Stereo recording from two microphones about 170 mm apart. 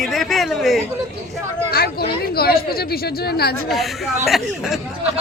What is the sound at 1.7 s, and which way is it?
Speech, 65° left (ahead or behind).